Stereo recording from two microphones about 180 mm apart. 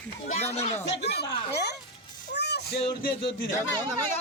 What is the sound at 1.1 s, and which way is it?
Speech, 65° left (ahead or behind).